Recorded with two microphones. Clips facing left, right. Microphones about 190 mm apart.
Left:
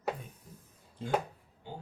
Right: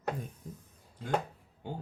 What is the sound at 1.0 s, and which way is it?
Speech, 25° left (ahead or behind).